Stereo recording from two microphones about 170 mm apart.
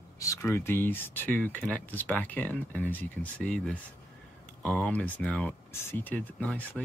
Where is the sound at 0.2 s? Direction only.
15° left (ahead or behind).